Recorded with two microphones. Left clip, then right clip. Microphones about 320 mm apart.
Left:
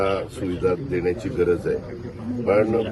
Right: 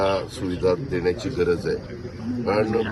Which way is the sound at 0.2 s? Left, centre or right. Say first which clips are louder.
Left 1 dB; centre.